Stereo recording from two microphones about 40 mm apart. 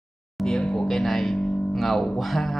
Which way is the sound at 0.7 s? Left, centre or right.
Centre.